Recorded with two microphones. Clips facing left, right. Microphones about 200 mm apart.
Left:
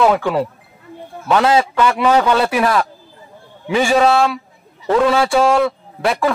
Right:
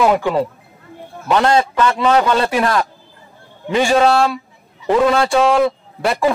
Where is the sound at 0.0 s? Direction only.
10° right (ahead or behind).